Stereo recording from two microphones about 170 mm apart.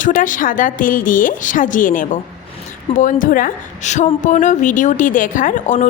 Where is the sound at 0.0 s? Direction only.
50° left (ahead or behind).